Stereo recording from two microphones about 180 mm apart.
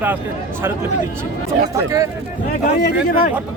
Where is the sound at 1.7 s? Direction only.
15° right (ahead or behind).